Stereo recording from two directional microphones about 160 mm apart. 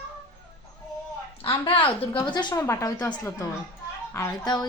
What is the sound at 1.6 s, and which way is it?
A woman's voice, 30° left (ahead or behind).